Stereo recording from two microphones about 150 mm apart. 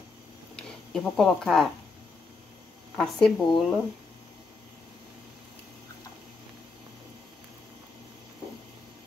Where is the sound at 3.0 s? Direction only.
5° left (ahead or behind).